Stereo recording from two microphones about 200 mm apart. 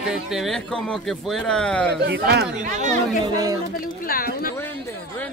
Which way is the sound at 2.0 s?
55° right (ahead or behind).